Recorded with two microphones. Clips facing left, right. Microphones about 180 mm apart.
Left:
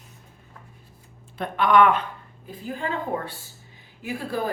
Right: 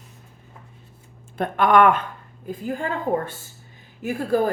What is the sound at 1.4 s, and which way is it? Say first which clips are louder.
A woman's voice: right 2 dB; 50° right (ahead or behind).